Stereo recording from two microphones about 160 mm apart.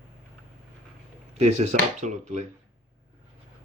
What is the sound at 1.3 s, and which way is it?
Speech, 45° right (ahead or behind).